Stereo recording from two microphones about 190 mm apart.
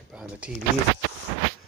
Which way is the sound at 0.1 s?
5° right (ahead or behind).